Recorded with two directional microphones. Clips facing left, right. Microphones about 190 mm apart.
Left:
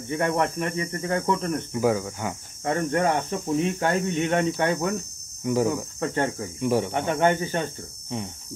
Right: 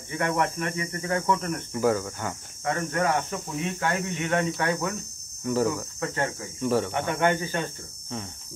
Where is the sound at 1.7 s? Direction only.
10° left (ahead or behind).